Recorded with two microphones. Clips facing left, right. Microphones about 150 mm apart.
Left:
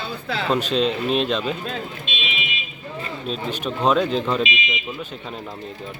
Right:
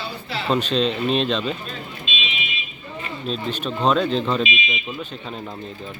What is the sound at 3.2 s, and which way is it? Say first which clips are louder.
Speech: right 1 dB; 10° left (ahead or behind).